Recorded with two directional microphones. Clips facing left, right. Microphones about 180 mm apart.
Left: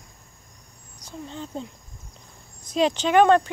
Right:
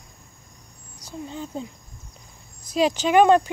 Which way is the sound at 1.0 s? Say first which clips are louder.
Right 2 dB; 10° right (ahead or behind).